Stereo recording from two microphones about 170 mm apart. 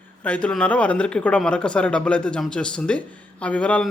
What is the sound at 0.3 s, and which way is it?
A man's voice, 5° left (ahead or behind).